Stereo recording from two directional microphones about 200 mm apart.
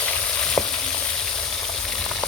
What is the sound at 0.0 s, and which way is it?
Frying, 5° left (ahead or behind).